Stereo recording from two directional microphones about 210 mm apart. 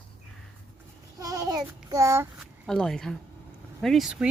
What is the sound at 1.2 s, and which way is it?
Child singing, 15° right (ahead or behind).